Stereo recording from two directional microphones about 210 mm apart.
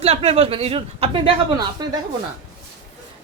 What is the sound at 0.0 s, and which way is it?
Speech, 30° right (ahead or behind).